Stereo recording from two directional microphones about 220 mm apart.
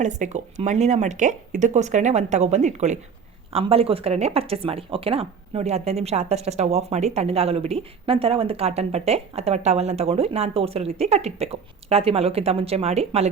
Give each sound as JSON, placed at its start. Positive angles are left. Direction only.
{"t": 0.0, "sound": "speech", "side_deg": -35}